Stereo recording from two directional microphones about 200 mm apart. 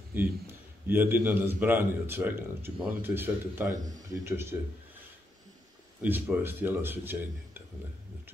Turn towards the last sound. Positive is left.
turn(degrees=-10)  # may be behind; listen again after turning